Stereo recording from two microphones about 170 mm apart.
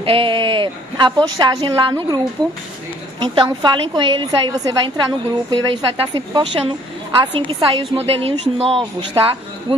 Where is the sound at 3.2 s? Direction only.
25° right (ahead or behind).